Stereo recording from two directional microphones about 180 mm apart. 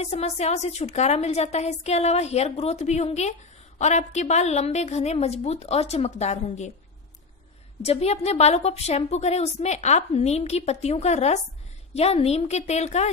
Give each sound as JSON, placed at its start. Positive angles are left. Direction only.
{"t": 0.0, "sound": "a woman's voice", "side_deg": 35}
{"t": 7.8, "sound": "a woman's voice", "side_deg": 35}